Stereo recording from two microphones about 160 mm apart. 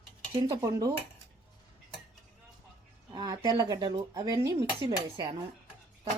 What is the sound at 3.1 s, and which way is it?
Speech, 25° right (ahead or behind).